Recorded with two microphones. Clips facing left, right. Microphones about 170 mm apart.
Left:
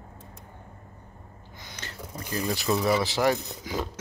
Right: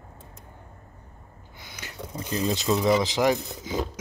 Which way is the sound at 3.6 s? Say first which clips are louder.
Right 3 dB; 20° right (ahead or behind).